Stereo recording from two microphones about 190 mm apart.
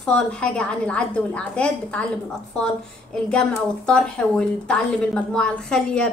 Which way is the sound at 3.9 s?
5° left (ahead or behind).